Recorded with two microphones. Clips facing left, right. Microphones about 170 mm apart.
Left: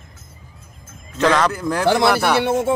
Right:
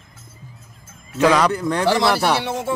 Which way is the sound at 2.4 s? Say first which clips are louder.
Left 6 dB; 55° left (ahead or behind).